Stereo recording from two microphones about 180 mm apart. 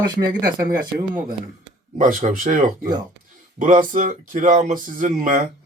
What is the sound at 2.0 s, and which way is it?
Speech, 45° right (ahead or behind).